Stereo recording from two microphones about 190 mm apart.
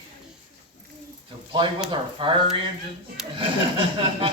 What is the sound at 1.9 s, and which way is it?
Speech, 25° right (ahead or behind).